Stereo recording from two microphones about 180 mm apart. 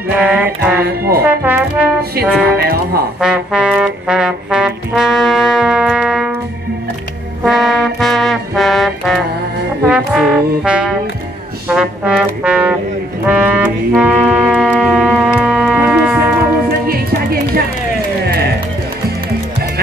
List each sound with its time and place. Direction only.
0.1 s music: 5° right (ahead or behind)
0.8 s music: 60° right (ahead or behind)
1.2 s music: 10° right (ahead or behind)
2.5 s speech: 60° right (ahead or behind)
3.2 s trombone: 5° right (ahead or behind)
7.4 s music: centre (ahead or behind)
9.8 s brass instrument: 5° right (ahead or behind)
13.3 s music: 10° right (ahead or behind)
16.8 s music: 55° right (ahead or behind)